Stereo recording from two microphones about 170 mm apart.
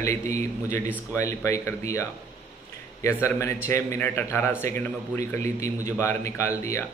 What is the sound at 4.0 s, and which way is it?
Speech, 15° left (ahead or behind).